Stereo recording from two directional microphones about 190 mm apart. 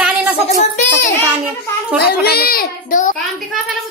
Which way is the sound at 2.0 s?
55° left (ahead or behind).